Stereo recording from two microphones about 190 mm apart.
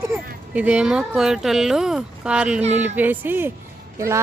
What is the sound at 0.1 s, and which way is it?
Speech, 10° right (ahead or behind).